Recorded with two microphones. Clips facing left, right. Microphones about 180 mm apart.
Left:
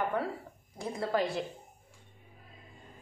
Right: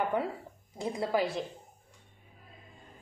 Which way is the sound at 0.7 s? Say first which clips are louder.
Right 1 dB; 15° right (ahead or behind).